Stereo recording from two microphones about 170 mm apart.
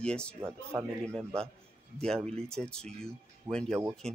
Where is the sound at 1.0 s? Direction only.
5° left (ahead or behind).